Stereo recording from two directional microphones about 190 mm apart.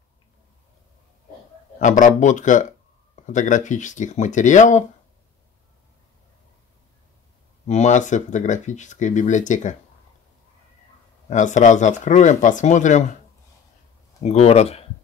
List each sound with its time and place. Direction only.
1.8 s speech: 40° left (ahead or behind)
7.6 s speech: 35° left (ahead or behind)
11.2 s speech: 40° left (ahead or behind)
14.2 s speech: 35° left (ahead or behind)